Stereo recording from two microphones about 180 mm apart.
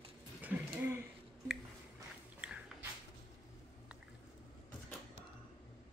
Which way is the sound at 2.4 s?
5° right (ahead or behind).